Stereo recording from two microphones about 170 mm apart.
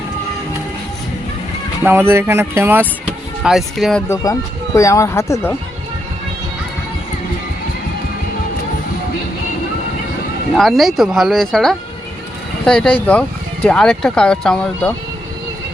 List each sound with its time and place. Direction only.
1.8 s speech: 10° right (ahead or behind)
3.4 s speech: centre (ahead or behind)
4.1 s speech: 20° left (ahead or behind)
10.5 s speech: centre (ahead or behind)